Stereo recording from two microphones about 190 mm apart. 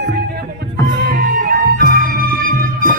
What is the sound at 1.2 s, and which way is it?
Music, 50° right (ahead or behind).